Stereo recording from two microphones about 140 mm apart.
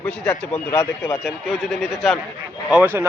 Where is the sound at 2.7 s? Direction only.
15° right (ahead or behind).